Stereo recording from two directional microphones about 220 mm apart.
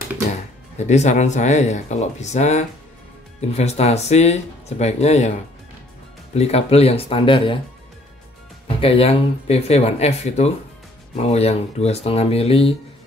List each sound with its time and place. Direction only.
0.7 s speech: 30° left (ahead or behind)
6.3 s speech: 30° left (ahead or behind)
8.6 s speech: 25° left (ahead or behind)